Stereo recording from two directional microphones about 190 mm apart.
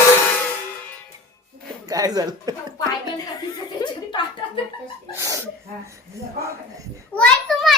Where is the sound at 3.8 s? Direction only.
20° left (ahead or behind).